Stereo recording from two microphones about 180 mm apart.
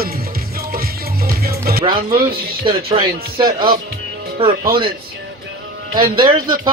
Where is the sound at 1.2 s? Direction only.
55° right (ahead or behind).